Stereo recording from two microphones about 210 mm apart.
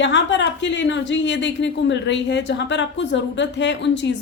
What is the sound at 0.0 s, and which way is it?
A woman's voice, 60° left (ahead or behind).